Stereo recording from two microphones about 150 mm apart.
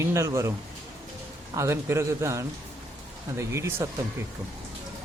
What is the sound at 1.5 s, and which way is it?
Speech, 20° right (ahead or behind).